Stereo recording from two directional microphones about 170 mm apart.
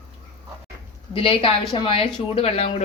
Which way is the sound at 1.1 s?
30° left (ahead or behind).